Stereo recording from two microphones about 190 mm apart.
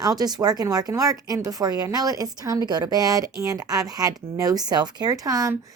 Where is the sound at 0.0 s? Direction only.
20° right (ahead or behind).